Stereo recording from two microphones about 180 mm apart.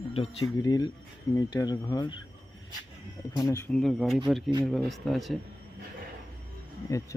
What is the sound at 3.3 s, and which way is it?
Speech, 20° left (ahead or behind).